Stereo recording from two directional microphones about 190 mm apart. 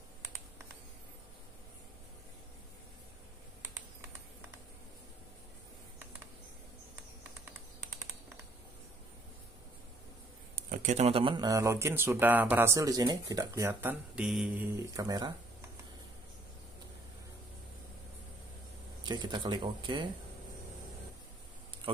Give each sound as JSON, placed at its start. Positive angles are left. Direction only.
{"t": 10.5, "sound": "speech", "side_deg": -45}
{"t": 15.0, "sound": "speech", "side_deg": -20}
{"t": 19.0, "sound": "speech", "side_deg": -25}